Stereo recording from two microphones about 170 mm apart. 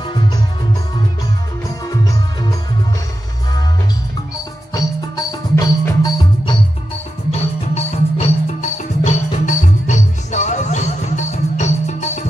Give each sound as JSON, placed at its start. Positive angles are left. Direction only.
{"t": 0.0, "sound": "music", "side_deg": 25}
{"t": 4.7, "sound": "music", "side_deg": 20}
{"t": 7.2, "sound": "music", "side_deg": 40}